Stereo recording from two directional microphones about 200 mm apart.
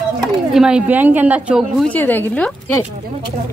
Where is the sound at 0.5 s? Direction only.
5° right (ahead or behind).